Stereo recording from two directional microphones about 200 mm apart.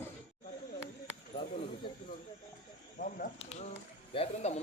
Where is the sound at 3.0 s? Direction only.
40° left (ahead or behind).